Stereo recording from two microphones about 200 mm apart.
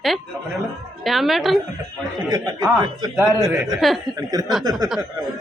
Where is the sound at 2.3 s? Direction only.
20° right (ahead or behind).